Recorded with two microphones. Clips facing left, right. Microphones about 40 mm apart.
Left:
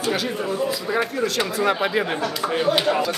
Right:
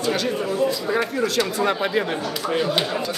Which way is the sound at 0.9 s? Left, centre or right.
Centre.